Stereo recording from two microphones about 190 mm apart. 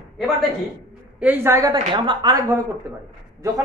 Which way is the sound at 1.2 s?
10° right (ahead or behind).